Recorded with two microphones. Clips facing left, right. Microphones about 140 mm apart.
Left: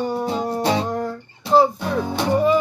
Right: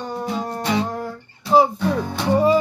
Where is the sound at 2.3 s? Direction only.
30° right (ahead or behind).